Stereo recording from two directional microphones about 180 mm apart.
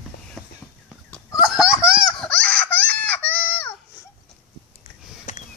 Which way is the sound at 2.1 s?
5° left (ahead or behind).